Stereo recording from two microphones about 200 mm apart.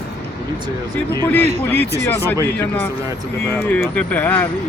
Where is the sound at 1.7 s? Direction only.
10° left (ahead or behind).